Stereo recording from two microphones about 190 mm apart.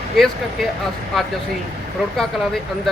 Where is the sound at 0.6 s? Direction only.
Centre (ahead or behind).